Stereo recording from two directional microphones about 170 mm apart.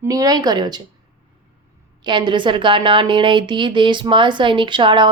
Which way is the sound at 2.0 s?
25° right (ahead or behind).